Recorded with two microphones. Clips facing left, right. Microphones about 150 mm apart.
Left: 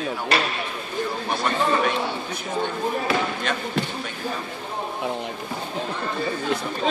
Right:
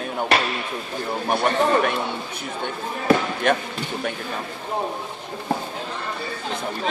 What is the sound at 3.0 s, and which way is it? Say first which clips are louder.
Speech: right 5 dB; 55° right (ahead or behind).